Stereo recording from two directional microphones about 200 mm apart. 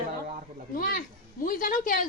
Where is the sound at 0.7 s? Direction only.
45° left (ahead or behind).